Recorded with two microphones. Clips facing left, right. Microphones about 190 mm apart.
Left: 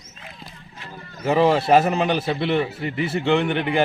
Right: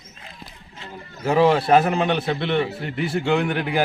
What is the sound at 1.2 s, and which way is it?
A man's voice, centre (ahead or behind).